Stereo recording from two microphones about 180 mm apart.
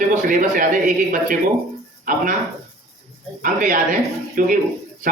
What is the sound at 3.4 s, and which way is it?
A man's voice, 45° right (ahead or behind).